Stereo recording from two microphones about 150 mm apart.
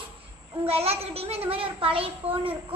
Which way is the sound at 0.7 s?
40° right (ahead or behind).